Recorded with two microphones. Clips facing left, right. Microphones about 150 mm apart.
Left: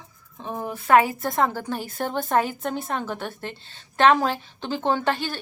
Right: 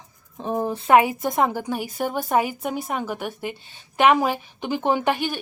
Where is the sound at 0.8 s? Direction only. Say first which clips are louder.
Right 1 dB; 15° right (ahead or behind).